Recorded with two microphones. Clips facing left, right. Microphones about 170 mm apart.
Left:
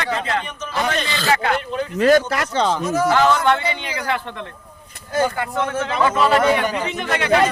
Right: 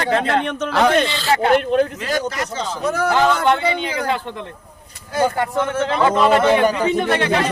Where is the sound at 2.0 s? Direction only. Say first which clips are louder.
Left 7 dB; 65° left (ahead or behind).